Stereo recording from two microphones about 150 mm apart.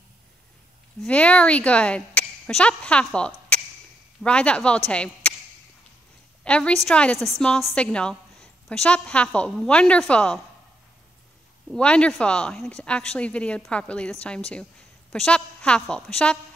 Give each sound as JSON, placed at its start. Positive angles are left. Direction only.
{"t": 1.0, "sound": "a woman's voice", "side_deg": 10}
{"t": 6.4, "sound": "a woman's voice", "side_deg": 5}
{"t": 11.7, "sound": "a woman's voice", "side_deg": 5}